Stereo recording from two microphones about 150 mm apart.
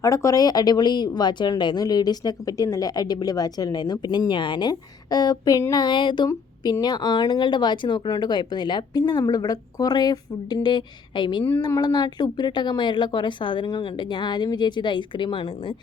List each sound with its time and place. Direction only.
0.0 s a woman's voice: 20° left (ahead or behind)